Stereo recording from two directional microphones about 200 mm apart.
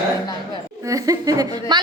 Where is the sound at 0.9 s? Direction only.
15° right (ahead or behind).